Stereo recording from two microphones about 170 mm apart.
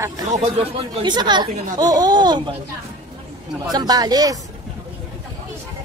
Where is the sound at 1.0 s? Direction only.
25° right (ahead or behind).